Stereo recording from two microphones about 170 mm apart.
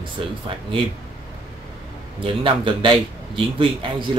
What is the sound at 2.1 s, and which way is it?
A man's voice, 30° right (ahead or behind).